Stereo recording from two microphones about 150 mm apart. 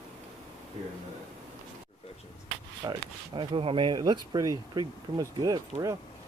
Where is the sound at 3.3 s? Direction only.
35° right (ahead or behind).